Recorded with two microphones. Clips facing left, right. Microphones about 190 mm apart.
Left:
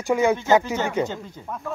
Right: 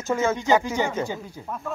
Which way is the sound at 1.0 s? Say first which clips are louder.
Left 2 dB; 10° right (ahead or behind).